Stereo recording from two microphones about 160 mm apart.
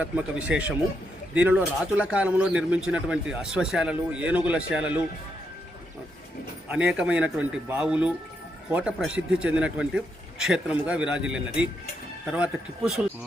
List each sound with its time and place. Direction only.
0.0 s speech: 10° right (ahead or behind)
6.7 s speech: 5° right (ahead or behind)